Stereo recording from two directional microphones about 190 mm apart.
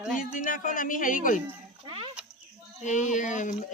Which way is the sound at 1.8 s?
30° right (ahead or behind).